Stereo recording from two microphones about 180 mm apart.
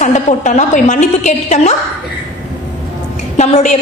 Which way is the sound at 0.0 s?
45° left (ahead or behind).